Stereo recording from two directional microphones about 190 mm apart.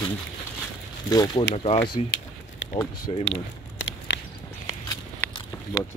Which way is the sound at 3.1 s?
30° left (ahead or behind).